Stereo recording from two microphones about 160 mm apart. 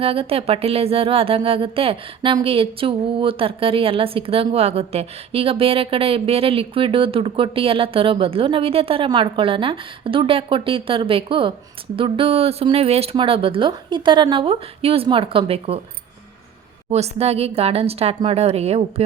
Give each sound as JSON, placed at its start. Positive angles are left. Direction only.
{"t": 0.0, "sound": "speech", "side_deg": -35}
{"t": 16.9, "sound": "speech", "side_deg": -40}